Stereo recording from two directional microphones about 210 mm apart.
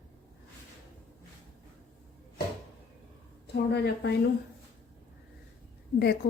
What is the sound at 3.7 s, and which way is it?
Speech, 55° left (ahead or behind).